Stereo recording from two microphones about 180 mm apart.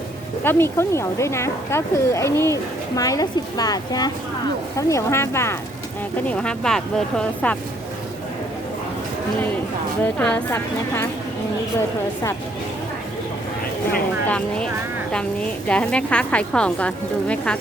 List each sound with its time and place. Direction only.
0.4 s speech: 15° left (ahead or behind)
10.0 s speech: 10° left (ahead or behind)
14.3 s speech: 5° left (ahead or behind)